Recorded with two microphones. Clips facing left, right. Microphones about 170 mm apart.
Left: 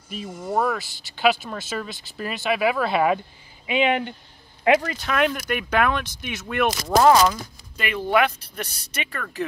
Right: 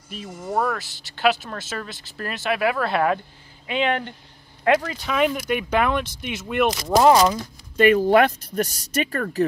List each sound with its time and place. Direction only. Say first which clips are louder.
0.1 s speech: left 1 dB; 5° left (ahead or behind)
7.2 s speech: right 1 dB; 35° right (ahead or behind)